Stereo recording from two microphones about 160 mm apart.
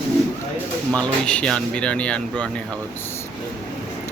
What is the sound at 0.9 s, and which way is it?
Speech, 5° left (ahead or behind).